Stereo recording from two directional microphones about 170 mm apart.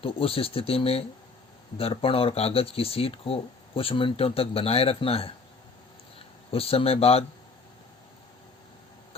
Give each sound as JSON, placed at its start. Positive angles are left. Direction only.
{"t": 0.0, "sound": "speech", "side_deg": 35}
{"t": 6.5, "sound": "speech", "side_deg": 35}